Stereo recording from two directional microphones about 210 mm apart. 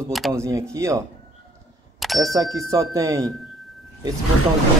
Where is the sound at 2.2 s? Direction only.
15° right (ahead or behind).